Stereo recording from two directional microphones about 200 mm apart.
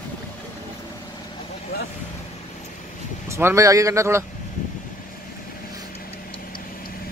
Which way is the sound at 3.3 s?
15° right (ahead or behind).